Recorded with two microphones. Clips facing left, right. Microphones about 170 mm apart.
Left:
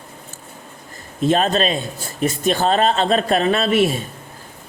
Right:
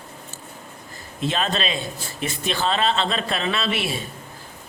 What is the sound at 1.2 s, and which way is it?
A man's voice, 45° left (ahead or behind).